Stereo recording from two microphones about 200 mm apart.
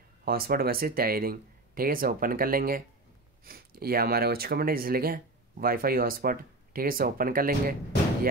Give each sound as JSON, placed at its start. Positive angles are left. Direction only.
{"t": 0.2, "sound": "speech", "side_deg": -50}